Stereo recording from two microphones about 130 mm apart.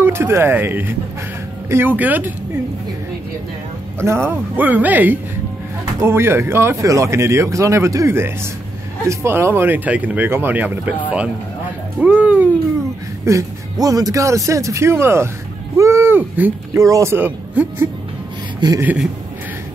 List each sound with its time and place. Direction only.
0.0 s speech: 20° right (ahead or behind)
4.0 s speech: 20° right (ahead or behind)
12.0 s speech: 10° right (ahead or behind)
13.2 s speech: 25° right (ahead or behind)